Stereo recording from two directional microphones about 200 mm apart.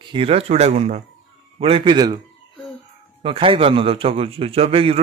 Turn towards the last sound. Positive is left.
turn(degrees=-30)  # may be behind; listen again after turning